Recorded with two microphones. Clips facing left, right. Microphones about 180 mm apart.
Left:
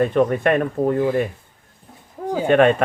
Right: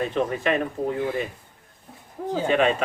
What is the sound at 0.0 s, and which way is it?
Speech, 55° left (ahead or behind).